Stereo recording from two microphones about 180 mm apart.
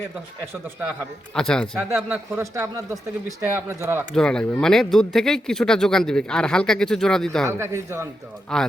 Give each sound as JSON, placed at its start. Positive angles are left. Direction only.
{"t": 1.3, "sound": "speech", "side_deg": 5}
{"t": 1.8, "sound": "a man's voice", "side_deg": -10}
{"t": 3.8, "sound": "a man's voice", "side_deg": -15}
{"t": 4.1, "sound": "speech", "side_deg": 5}
{"t": 7.4, "sound": "a man's voice", "side_deg": -15}
{"t": 8.5, "sound": "speech", "side_deg": 0}